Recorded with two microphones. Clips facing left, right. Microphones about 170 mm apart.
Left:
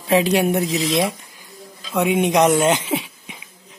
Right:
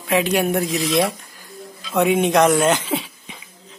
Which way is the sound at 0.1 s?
35° left (ahead or behind).